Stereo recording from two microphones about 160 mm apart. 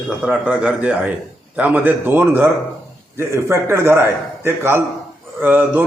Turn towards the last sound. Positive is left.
turn(degrees=-10)  # may be behind; listen again after turning